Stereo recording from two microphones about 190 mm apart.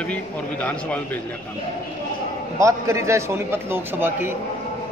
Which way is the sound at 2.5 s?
15° right (ahead or behind).